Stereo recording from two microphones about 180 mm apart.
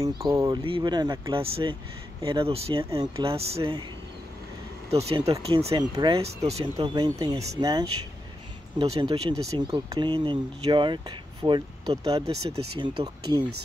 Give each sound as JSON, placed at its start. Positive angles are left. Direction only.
{"t": 0.0, "sound": "speech", "side_deg": -20}
{"t": 2.8, "sound": "speech", "side_deg": -20}
{"t": 3.3, "sound": "speech", "side_deg": -30}
{"t": 4.9, "sound": "speech", "side_deg": -35}